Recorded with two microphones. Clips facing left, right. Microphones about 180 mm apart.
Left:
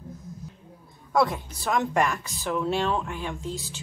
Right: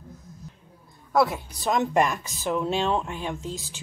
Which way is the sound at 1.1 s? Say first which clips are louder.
Right 1 dB; 5° right (ahead or behind).